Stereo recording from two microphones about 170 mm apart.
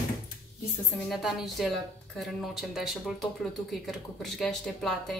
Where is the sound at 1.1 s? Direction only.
Centre (ahead or behind).